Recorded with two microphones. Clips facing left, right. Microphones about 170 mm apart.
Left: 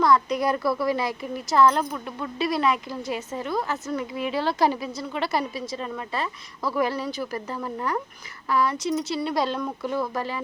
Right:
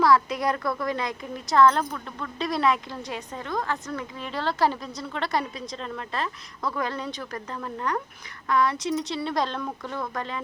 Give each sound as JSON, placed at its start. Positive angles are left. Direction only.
{"t": 0.0, "sound": "a woman's voice", "side_deg": 0}